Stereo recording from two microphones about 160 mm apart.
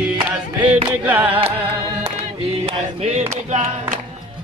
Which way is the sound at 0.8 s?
10° right (ahead or behind).